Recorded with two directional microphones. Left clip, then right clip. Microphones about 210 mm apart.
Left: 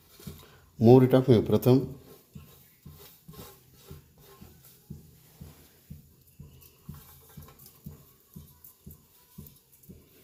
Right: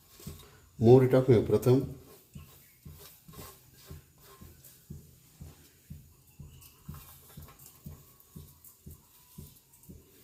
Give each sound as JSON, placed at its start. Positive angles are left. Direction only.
{"t": 0.8, "sound": "speech", "side_deg": 30}